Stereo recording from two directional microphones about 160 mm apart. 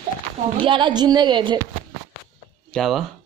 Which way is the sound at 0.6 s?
30° right (ahead or behind).